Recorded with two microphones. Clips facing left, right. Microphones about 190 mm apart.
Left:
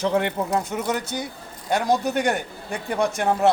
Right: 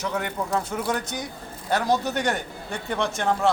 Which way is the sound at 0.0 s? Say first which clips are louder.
Left 6 dB; 25° left (ahead or behind).